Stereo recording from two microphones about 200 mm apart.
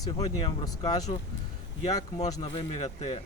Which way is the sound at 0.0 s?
20° left (ahead or behind).